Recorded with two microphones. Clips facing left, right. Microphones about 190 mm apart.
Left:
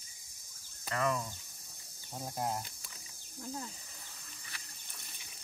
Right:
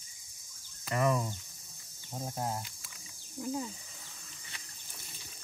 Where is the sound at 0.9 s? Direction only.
20° right (ahead or behind).